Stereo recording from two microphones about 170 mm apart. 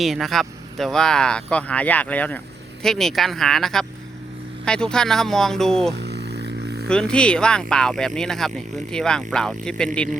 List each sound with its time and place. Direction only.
0.0 s speech: centre (ahead or behind)
6.0 s a sound: 75° right (ahead or behind)
6.8 s speech: 5° left (ahead or behind)